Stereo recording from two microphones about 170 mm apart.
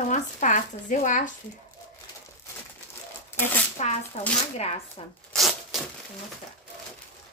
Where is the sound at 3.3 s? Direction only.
15° left (ahead or behind).